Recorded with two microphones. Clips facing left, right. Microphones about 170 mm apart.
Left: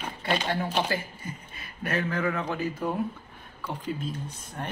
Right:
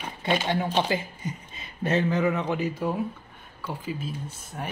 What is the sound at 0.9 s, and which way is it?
Speech, 20° right (ahead or behind).